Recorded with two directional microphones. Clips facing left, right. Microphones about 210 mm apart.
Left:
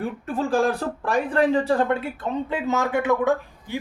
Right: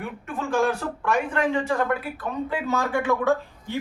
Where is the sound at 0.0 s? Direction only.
35° left (ahead or behind).